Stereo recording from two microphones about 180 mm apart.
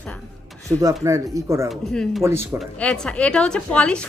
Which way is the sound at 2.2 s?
15° right (ahead or behind).